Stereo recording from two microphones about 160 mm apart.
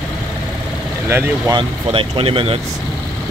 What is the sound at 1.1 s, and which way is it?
Speech, 15° right (ahead or behind).